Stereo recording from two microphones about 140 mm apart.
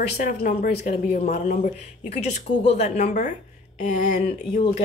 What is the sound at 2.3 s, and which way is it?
Speech, 55° left (ahead or behind).